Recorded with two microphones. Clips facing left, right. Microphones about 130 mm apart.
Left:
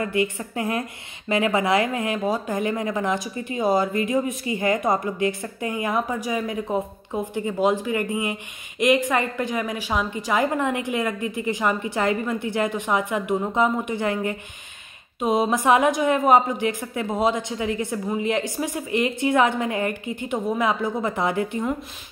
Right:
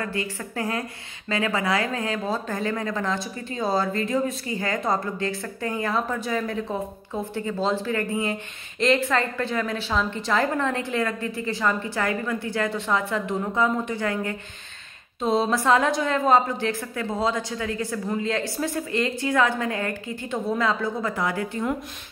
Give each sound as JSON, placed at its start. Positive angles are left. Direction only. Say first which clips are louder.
{"t": 0.0, "sound": "a woman's voice", "louder": "left 5 dB", "side_deg": 20}